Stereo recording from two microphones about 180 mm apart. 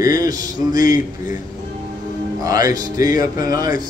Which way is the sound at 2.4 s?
20° right (ahead or behind).